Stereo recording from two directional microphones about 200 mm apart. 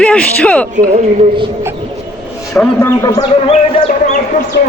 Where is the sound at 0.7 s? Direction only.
35° right (ahead or behind).